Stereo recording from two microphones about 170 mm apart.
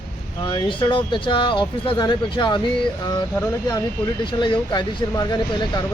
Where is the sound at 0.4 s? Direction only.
30° left (ahead or behind).